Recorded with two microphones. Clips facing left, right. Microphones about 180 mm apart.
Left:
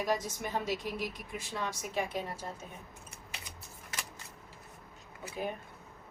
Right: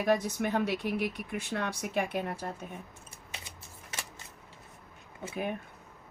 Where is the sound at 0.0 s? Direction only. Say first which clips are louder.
Right 5 dB; 60° right (ahead or behind).